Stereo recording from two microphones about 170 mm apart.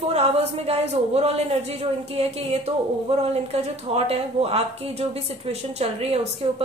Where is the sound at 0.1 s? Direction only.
35° right (ahead or behind).